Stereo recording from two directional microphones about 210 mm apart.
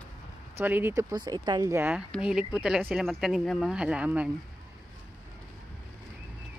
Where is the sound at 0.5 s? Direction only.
10° right (ahead or behind).